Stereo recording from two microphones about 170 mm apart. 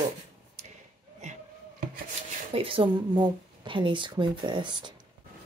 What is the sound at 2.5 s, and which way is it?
Speech, 30° right (ahead or behind).